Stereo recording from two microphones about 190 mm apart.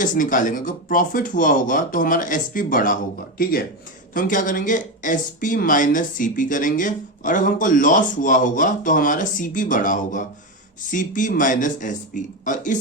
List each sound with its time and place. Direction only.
0.0 s speech: 45° left (ahead or behind)